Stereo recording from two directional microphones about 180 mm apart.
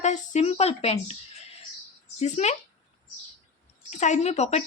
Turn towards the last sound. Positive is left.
turn(degrees=40)  # may be behind; listen again after turning